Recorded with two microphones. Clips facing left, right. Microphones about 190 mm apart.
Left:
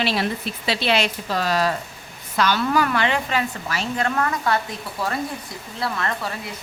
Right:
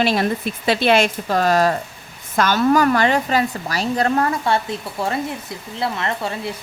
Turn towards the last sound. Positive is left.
turn(degrees=-25)  # may be behind; listen again after turning